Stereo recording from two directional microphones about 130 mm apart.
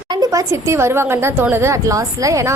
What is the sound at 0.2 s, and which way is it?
A woman's voice, 25° right (ahead or behind).